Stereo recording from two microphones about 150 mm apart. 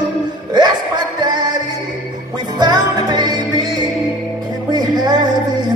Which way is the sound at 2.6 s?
30° right (ahead or behind).